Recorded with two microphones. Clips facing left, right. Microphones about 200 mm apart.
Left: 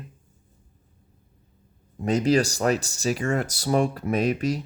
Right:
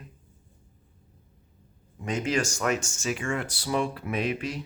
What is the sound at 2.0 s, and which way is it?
Speech, 40° left (ahead or behind).